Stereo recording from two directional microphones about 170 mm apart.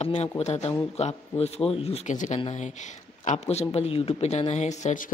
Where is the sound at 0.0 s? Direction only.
40° left (ahead or behind).